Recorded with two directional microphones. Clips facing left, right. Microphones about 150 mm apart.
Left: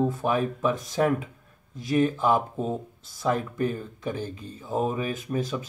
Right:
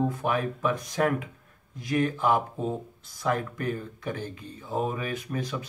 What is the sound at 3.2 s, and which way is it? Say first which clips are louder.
Speech: left 2 dB; 25° left (ahead or behind).